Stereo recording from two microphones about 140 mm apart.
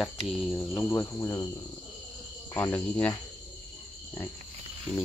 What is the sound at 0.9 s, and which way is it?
Speech, 20° left (ahead or behind).